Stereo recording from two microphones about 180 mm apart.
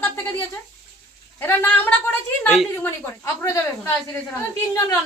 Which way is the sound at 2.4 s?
Centre (ahead or behind).